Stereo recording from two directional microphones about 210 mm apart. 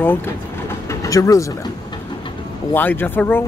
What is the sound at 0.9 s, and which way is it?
Vehicle, 15° left (ahead or behind).